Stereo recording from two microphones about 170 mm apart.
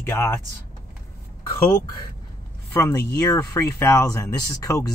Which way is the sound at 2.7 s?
15° left (ahead or behind).